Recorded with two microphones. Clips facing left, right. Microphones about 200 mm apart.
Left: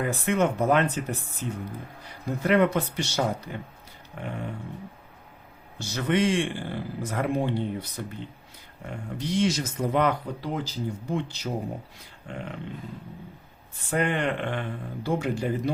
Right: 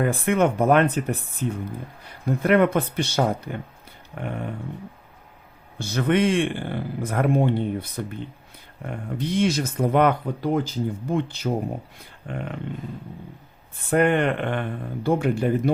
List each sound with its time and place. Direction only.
0.0 s speech: 55° right (ahead or behind)
5.8 s speech: 55° right (ahead or behind)
13.9 s speech: 55° right (ahead or behind)